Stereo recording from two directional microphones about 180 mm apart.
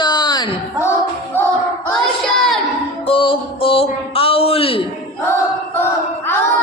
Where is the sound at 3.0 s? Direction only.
30° left (ahead or behind).